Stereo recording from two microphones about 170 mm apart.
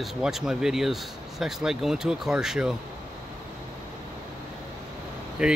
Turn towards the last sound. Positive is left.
turn(degrees=-5)  # may be behind; listen again after turning